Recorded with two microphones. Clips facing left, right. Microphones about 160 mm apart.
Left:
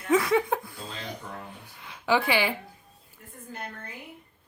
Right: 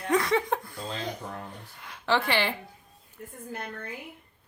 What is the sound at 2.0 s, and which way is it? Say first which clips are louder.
Speech: left 2 dB; 10° left (ahead or behind).